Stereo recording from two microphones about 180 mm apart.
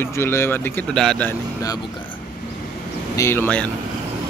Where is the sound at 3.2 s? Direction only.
15° left (ahead or behind).